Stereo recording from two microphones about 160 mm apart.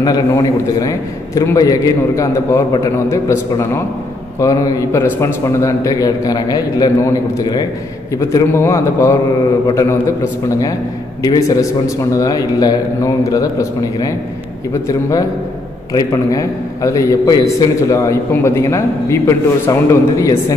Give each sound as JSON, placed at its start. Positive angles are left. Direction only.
{"t": 0.0, "sound": "a man's voice", "side_deg": 25}
{"t": 11.2, "sound": "a man's voice", "side_deg": 20}